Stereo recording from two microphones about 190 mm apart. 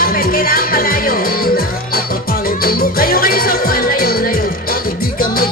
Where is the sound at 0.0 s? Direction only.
50° left (ahead or behind).